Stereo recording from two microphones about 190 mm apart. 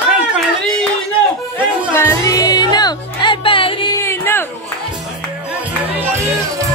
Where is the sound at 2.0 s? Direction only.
15° left (ahead or behind).